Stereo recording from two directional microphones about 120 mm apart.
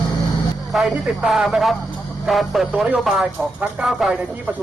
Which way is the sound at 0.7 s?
Centre (ahead or behind).